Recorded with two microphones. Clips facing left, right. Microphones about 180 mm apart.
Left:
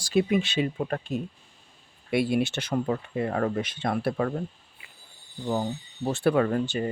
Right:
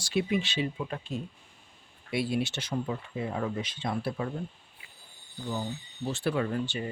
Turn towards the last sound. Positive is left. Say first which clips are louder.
# left 6 dB
turn(degrees=50)  # may be behind; listen again after turning